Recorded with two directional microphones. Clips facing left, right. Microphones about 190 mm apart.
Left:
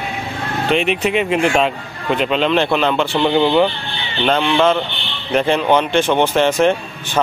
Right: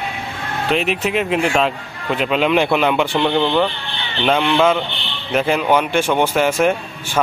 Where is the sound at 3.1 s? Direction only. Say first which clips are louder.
Left 2 dB; 5° left (ahead or behind).